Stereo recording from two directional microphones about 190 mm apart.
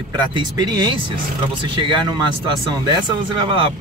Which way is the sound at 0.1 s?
25° right (ahead or behind).